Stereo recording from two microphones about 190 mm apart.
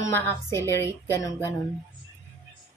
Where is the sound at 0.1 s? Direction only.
15° left (ahead or behind).